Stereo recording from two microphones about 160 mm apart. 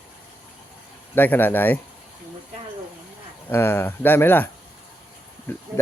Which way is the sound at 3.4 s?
15° left (ahead or behind).